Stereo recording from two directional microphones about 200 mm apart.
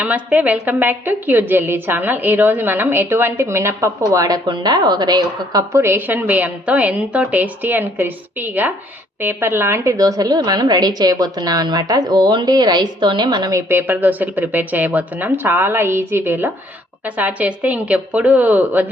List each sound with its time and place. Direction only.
0.0 s a woman's voice: 5° right (ahead or behind)